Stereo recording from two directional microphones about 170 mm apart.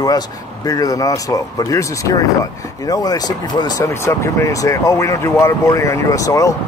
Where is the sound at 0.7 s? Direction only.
20° left (ahead or behind).